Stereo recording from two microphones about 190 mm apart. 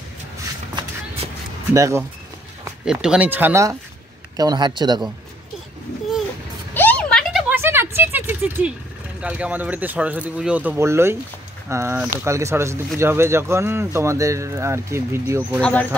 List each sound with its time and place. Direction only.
1.7 s speech: 15° right (ahead or behind)
2.8 s speech: 5° right (ahead or behind); by 5.0 s 25° right (ahead or behind)
6.7 s vehicle: 10° left (ahead or behind)
7.4 s a sound: 10° right (ahead or behind)
9.2 s speech: 5° right (ahead or behind)
15.6 s speech: 5° left (ahead or behind)